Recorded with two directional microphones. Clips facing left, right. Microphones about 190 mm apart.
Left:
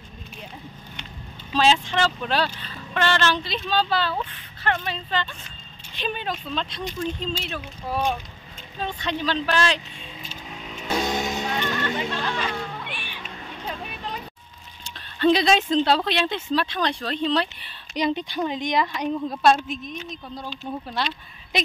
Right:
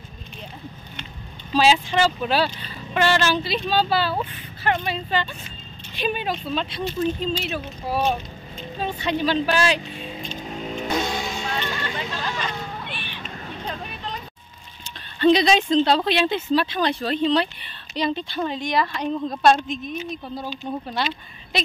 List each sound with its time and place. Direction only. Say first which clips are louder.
1.5 s speech: right 2 dB; 10° right (ahead or behind)
10.3 s vehicle: right 8 dB; 45° right (ahead or behind)
11.1 s music: left 2 dB; 20° left (ahead or behind)
11.6 s speech: left 3 dB; 10° right (ahead or behind)
12.4 s a sound: left 1 dB; 10° left (ahead or behind)
13.7 s vehicle: left 1 dB; 5° left (ahead or behind)
15.1 s speech: right 2 dB; centre (ahead or behind)
17.9 s speech: even; 15° left (ahead or behind)
19.2 s speech: right 2 dB; 5° left (ahead or behind)